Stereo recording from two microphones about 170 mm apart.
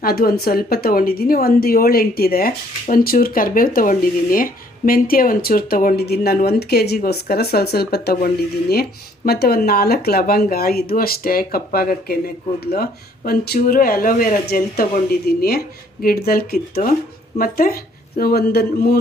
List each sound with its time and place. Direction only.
0.0 s speech: 60° left (ahead or behind)